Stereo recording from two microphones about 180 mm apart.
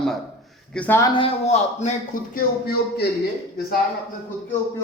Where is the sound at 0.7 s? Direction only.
10° left (ahead or behind).